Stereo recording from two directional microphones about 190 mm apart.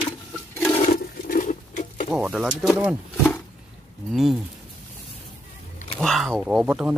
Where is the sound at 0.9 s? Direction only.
45° left (ahead or behind).